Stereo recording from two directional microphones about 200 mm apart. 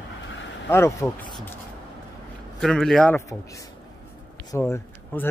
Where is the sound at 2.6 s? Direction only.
Centre (ahead or behind).